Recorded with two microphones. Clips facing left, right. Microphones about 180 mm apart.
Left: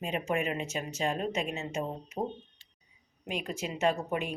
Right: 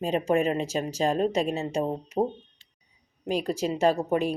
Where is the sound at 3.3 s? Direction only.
35° right (ahead or behind).